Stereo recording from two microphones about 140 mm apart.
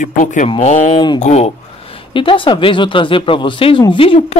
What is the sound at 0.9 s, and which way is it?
Speech, 35° left (ahead or behind).